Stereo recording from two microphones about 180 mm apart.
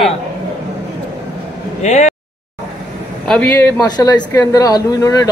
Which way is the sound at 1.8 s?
40° left (ahead or behind).